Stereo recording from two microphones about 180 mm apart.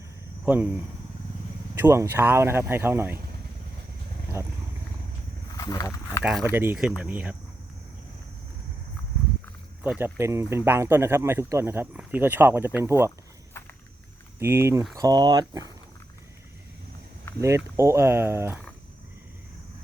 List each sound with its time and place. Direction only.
0.4 s speech: 10° right (ahead or behind)
4.4 s speech: 15° right (ahead or behind)
5.5 s speech: 20° left (ahead or behind)
6.4 s speech: 10° right (ahead or behind)
9.8 s speech: 10° right (ahead or behind)
14.3 s speech: 15° right (ahead or behind)
17.7 s speech: 15° right (ahead or behind)